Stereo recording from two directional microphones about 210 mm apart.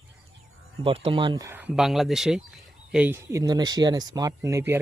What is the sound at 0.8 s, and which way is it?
Speech, 25° right (ahead or behind).